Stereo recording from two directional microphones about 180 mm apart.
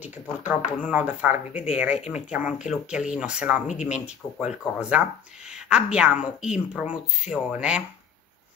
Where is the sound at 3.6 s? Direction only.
40° left (ahead or behind).